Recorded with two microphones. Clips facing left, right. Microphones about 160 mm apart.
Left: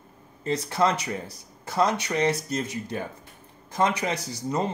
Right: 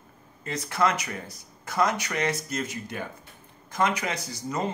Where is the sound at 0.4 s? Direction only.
30° left (ahead or behind).